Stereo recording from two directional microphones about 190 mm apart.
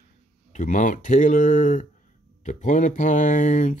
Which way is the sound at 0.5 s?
40° left (ahead or behind).